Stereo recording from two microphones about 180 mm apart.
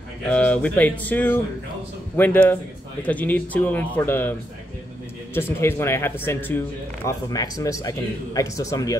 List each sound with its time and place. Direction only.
0.3 s speech: 5° left (ahead or behind)